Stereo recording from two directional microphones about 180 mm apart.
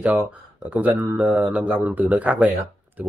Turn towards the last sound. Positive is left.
turn(degrees=-10)  # may be behind; listen again after turning